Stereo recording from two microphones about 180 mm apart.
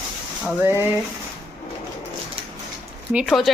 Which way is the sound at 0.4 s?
15° right (ahead or behind).